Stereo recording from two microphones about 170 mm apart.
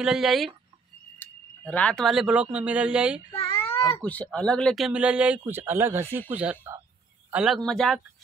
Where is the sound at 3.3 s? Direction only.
35° left (ahead or behind).